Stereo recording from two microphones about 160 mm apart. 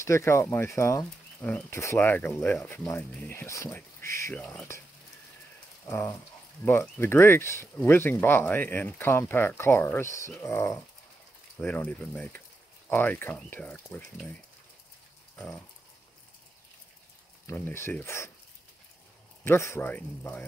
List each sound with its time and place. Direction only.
0.0 s speech: 15° left (ahead or behind)
5.9 s speech: 15° left (ahead or behind)
15.3 s pig: 10° left (ahead or behind)
17.5 s speech: 15° left (ahead or behind)
19.4 s speech: 15° left (ahead or behind)